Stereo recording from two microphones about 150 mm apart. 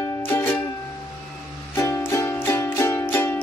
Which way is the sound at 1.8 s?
20° left (ahead or behind).